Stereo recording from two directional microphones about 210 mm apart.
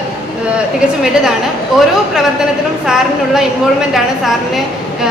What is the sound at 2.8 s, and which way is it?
A woman's voice, 5° right (ahead or behind).